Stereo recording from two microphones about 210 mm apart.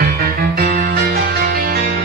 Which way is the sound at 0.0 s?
45° right (ahead or behind).